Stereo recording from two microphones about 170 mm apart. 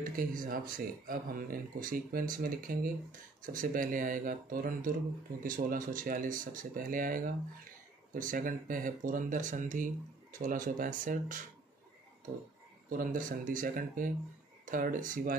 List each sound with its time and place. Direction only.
0.0 s speech: 55° right (ahead or behind)
12.9 s speech: 55° right (ahead or behind)